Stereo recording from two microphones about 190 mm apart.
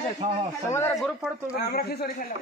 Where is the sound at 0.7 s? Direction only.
15° left (ahead or behind).